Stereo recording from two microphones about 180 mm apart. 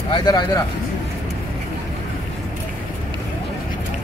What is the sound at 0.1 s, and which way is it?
Speech, 25° left (ahead or behind).